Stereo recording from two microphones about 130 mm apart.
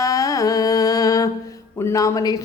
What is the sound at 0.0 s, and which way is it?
Music, 25° left (ahead or behind).